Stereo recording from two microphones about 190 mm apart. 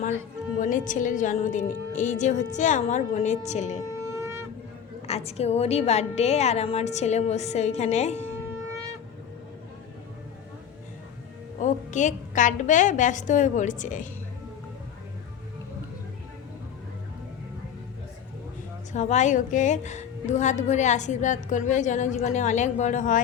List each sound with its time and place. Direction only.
0.6 s a woman's voice: 40° left (ahead or behind)
3.9 s wind instrument: 15° right (ahead or behind)
5.0 s a woman's voice: 30° left (ahead or behind)
11.6 s a woman's voice: 40° left (ahead or behind)
18.9 s a woman's voice: 40° left (ahead or behind)